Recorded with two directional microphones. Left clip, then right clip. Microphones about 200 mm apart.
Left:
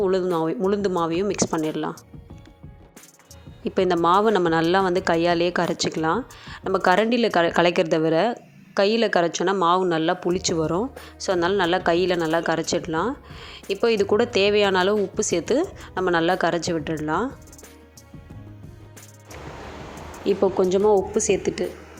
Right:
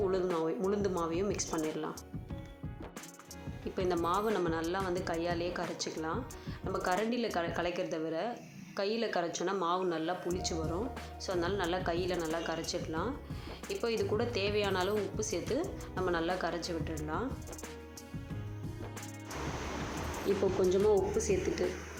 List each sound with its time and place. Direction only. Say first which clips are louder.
0.0 s speech: left 10 dB; 40° left (ahead or behind)
3.6 s speech: left 13 dB; 45° left (ahead or behind)
20.3 s speech: left 10 dB; 40° left (ahead or behind)